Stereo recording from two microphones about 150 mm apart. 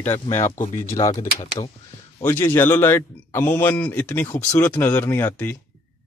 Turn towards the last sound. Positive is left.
turn(degrees=15)  # may be behind; listen again after turning